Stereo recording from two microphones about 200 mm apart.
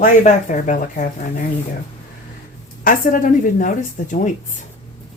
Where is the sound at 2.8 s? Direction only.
40° left (ahead or behind).